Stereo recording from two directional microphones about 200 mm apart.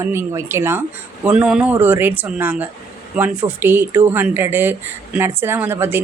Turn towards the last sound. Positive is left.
turn(degrees=-10)  # may be behind; listen again after turning